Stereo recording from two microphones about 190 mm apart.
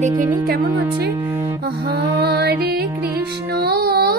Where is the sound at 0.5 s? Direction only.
55° right (ahead or behind).